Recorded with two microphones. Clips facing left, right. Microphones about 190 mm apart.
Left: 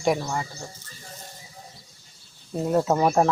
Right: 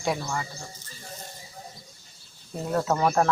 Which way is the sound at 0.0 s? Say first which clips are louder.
Left 4 dB; 15° left (ahead or behind).